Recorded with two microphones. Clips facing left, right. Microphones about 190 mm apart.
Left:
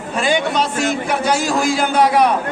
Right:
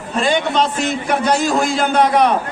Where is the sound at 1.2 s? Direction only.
5° left (ahead or behind).